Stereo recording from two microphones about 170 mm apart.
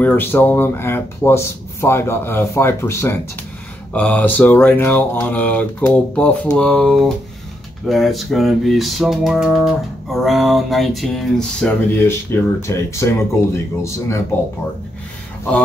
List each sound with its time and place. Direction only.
0.0 s speech: 10° left (ahead or behind)
7.8 s music: centre (ahead or behind)
12.3 s speech: 15° left (ahead or behind)